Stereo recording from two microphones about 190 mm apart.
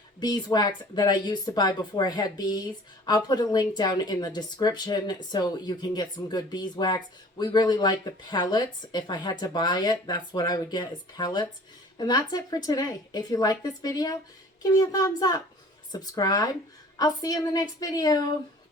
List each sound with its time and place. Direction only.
0.2 s speech: 20° left (ahead or behind)